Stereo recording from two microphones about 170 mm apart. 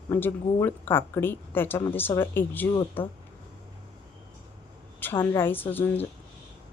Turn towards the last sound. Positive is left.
turn(degrees=10)  # may be behind; listen again after turning